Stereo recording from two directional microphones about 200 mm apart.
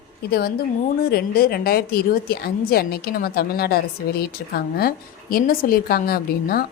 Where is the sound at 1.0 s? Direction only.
50° left (ahead or behind).